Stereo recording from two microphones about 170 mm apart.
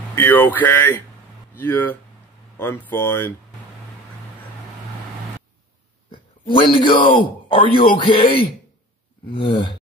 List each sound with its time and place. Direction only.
0.1 s speech: 10° left (ahead or behind)
6.1 s speech: 30° left (ahead or behind)